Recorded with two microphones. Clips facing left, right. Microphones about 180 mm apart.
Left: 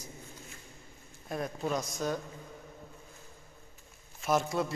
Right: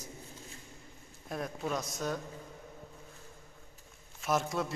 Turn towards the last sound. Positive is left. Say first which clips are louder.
# left 2 dB
turn(degrees=0)  # may be behind; listen again after turning